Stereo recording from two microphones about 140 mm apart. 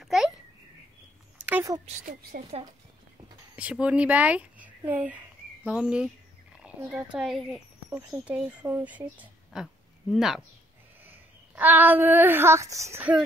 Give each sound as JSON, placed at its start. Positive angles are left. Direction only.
{"t": 0.0, "sound": "a sound", "side_deg": -5}
{"t": 2.5, "sound": "speech", "side_deg": -45}
{"t": 3.5, "sound": "speech", "side_deg": -10}